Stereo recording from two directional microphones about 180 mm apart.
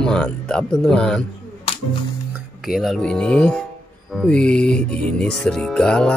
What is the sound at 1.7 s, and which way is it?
Music, 35° left (ahead or behind).